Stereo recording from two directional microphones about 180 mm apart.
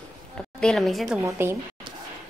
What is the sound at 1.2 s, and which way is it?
Speech, 15° right (ahead or behind).